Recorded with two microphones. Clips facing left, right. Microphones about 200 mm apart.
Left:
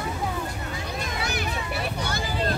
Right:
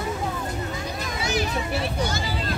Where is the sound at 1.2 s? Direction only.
60° left (ahead or behind).